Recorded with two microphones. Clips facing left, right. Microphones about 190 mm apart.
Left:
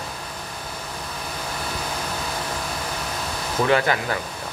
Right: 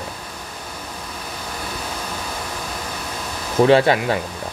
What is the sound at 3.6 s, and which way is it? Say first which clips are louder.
Speech: right 7 dB; 25° right (ahead or behind).